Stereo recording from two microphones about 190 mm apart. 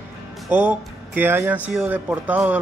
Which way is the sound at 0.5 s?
10° right (ahead or behind).